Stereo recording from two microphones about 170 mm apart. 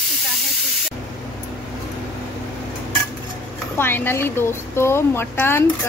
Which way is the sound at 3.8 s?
10° left (ahead or behind).